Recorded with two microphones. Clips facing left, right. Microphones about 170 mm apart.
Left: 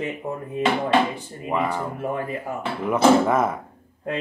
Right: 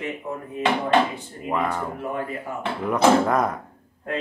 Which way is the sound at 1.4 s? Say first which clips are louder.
Left 1 dB; 5° left (ahead or behind).